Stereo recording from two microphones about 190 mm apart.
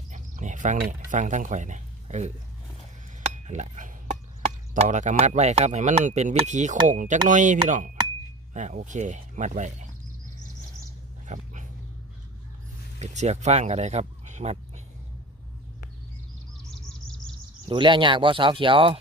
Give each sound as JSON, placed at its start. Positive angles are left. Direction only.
{"t": 0.1, "sound": "speech", "side_deg": -40}
{"t": 11.3, "sound": "speech", "side_deg": -40}
{"t": 13.0, "sound": "speech", "side_deg": -35}
{"t": 17.7, "sound": "speech", "side_deg": -25}